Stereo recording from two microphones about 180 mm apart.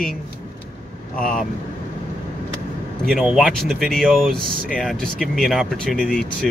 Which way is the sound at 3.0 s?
Centre (ahead or behind).